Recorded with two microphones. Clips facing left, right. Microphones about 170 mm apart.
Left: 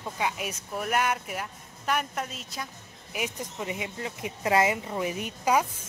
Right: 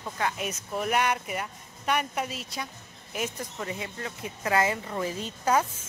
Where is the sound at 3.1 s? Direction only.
15° left (ahead or behind).